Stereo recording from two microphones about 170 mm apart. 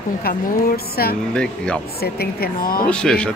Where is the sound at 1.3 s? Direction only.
5° left (ahead or behind).